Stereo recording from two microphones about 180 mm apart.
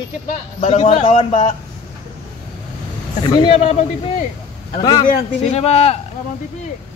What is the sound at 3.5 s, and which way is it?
Speech, 35° left (ahead or behind).